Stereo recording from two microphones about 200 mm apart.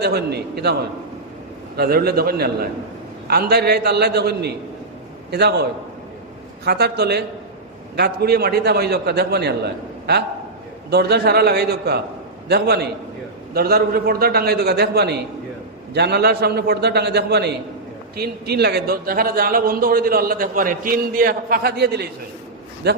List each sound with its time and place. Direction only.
0.0 s a man's voice: 55° right (ahead or behind)
6.7 s a man's voice: 55° right (ahead or behind)